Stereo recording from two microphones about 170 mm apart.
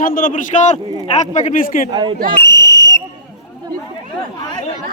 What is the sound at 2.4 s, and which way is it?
Fire alarm, 90° left.